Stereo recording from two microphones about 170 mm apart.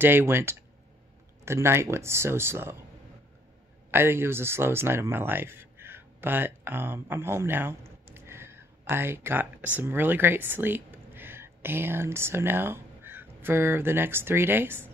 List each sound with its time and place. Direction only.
0.0 s speech: 15° right (ahead or behind)
3.9 s speech: 15° right (ahead or behind)
8.1 s a sound: 15° right (ahead or behind)
9.8 s speech: 10° right (ahead or behind)